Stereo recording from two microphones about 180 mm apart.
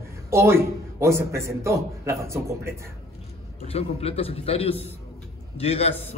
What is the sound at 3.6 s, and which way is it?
A man's voice, 35° left (ahead or behind).